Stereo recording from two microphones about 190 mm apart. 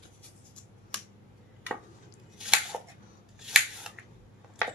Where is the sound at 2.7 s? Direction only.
Centre (ahead or behind).